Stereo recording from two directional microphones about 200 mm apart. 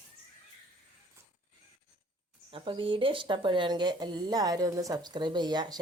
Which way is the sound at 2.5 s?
25° right (ahead or behind).